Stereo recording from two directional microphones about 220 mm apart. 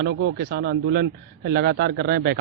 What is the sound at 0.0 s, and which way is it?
A man's voice, 55° right (ahead or behind).